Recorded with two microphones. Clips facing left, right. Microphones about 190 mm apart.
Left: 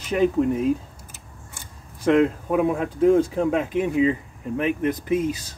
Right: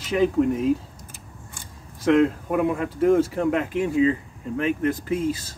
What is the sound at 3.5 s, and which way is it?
Speech, 20° left (ahead or behind).